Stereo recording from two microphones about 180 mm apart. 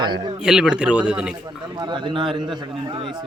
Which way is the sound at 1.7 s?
25° right (ahead or behind).